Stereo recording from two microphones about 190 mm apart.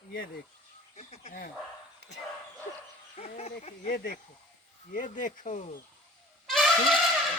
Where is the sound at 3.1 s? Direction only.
35° left (ahead or behind).